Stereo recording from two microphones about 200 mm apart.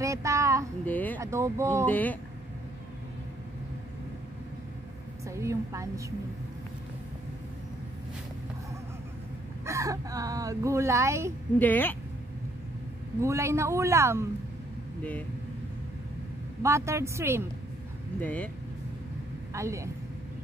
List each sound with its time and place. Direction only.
0.0 s child singing: 15° right (ahead or behind)
0.8 s a sound: 10° left (ahead or behind)
1.2 s speech: 15° right (ahead or behind)
1.9 s speech: 10° left (ahead or behind)
5.2 s speech: 15° right (ahead or behind)
9.7 s speech: 15° right (ahead or behind)
11.5 s speech: 10° left (ahead or behind)
13.2 s speech: 15° right (ahead or behind)
16.6 s speech: 15° right (ahead or behind)
18.2 s speech: 10° left (ahead or behind)
19.5 s speech: 15° right (ahead or behind)